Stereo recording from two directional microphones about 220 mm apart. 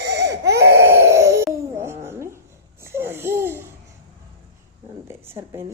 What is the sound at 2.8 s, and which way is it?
Babbling, 10° right (ahead or behind).